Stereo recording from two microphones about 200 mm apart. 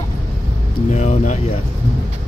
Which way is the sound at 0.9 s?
35° left (ahead or behind).